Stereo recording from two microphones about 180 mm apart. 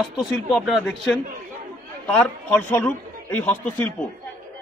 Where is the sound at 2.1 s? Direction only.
5° left (ahead or behind).